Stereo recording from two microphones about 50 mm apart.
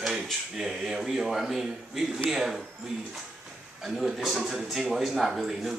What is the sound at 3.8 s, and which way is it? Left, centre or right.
A man's voice, centre.